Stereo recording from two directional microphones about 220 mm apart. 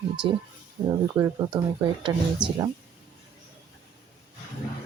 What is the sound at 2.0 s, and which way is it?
Speech, 20° right (ahead or behind).